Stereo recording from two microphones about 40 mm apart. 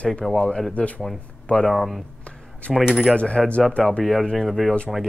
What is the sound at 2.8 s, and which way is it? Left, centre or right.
Coin, centre.